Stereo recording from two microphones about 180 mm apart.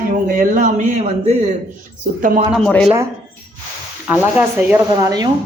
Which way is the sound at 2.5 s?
5° left (ahead or behind).